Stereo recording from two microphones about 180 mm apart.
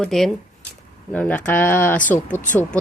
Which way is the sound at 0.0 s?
5° left (ahead or behind).